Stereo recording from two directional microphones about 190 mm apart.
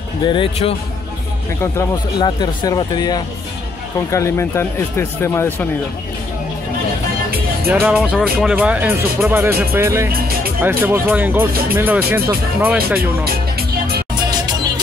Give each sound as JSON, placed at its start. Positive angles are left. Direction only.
{"t": 0.3, "sound": "speech", "side_deg": 30}
{"t": 1.6, "sound": "speech", "side_deg": 20}
{"t": 7.9, "sound": "speech", "side_deg": 0}
{"t": 13.2, "sound": "music", "side_deg": -55}